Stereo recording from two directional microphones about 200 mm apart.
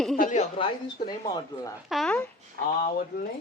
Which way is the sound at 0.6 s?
25° left (ahead or behind).